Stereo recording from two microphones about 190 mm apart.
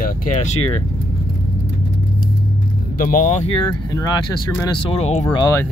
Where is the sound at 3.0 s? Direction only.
45° left (ahead or behind).